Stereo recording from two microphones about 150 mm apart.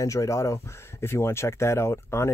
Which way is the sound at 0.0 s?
20° left (ahead or behind).